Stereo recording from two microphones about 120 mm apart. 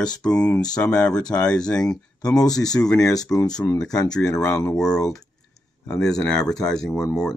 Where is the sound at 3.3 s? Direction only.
35° left (ahead or behind).